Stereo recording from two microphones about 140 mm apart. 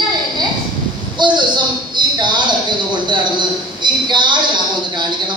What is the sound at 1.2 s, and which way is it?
A woman's voice, 35° right (ahead or behind).